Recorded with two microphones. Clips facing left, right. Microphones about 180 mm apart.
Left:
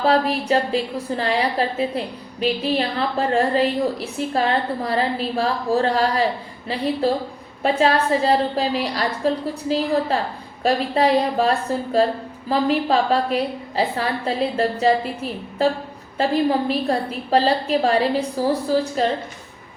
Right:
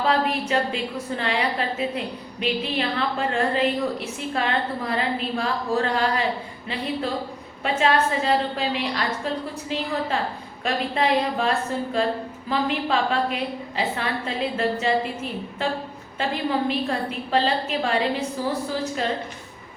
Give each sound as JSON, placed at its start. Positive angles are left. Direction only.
{"t": 0.0, "sound": "a woman's voice", "side_deg": 35}
{"t": 7.6, "sound": "a woman's voice", "side_deg": 35}